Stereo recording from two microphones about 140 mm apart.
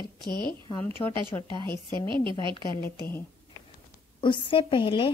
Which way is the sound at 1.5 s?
35° right (ahead or behind).